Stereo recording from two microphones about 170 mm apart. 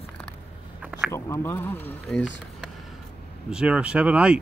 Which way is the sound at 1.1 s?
15° left (ahead or behind).